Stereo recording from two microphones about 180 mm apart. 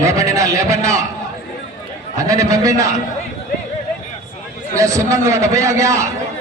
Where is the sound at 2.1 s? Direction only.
20° right (ahead or behind).